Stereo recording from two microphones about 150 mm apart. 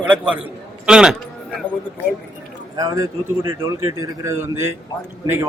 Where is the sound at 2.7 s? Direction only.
20° right (ahead or behind).